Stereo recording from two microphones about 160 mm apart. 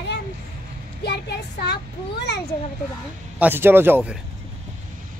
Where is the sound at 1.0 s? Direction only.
90° left.